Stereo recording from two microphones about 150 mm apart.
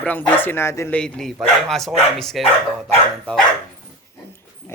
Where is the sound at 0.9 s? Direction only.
5° left (ahead or behind).